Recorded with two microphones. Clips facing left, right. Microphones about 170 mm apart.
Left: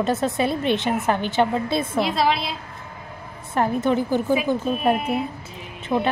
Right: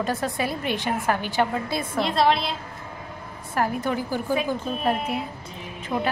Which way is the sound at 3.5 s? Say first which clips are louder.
Left 4 dB; 25° left (ahead or behind).